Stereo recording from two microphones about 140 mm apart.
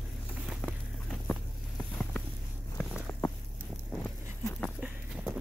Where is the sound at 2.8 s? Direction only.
10° left (ahead or behind).